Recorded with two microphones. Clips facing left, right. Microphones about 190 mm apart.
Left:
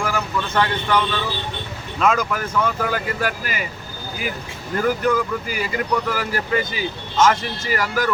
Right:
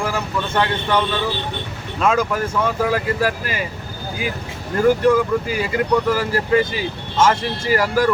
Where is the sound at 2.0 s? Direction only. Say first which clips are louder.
Right 2 dB; 30° right (ahead or behind).